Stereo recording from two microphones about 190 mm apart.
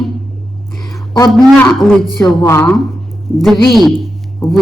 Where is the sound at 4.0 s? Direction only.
Centre (ahead or behind).